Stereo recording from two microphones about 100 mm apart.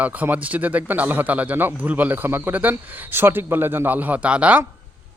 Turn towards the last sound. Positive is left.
turn(degrees=-10)  # may be behind; listen again after turning